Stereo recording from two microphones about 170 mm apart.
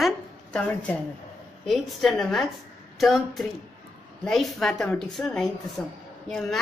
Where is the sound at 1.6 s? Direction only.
Centre (ahead or behind).